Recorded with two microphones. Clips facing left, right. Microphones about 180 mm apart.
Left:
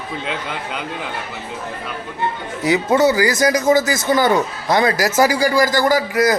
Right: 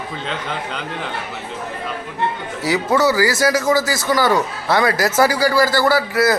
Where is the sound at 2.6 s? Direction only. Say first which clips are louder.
Left 2 dB; 20° left (ahead or behind).